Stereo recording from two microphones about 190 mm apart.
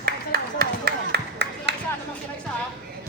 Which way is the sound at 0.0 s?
55° right (ahead or behind).